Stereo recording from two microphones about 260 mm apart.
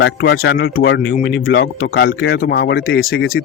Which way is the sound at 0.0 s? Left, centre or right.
Left.